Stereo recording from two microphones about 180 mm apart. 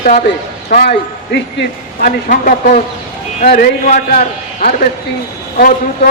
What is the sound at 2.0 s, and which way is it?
A man's voice, 50° left (ahead or behind).